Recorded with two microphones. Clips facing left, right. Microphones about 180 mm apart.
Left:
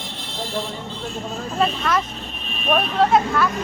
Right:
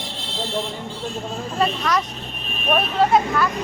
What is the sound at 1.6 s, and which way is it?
Speech, centre (ahead or behind).